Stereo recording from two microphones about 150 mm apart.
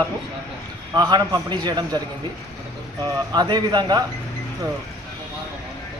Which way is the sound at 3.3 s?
25° right (ahead or behind).